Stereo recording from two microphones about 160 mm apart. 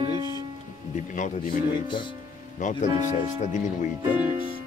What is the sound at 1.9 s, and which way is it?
Speech, 30° left (ahead or behind).